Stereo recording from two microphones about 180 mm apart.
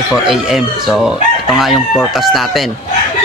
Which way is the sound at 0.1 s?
5° right (ahead or behind).